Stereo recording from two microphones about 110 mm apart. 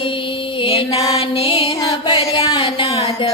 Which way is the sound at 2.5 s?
50° left (ahead or behind).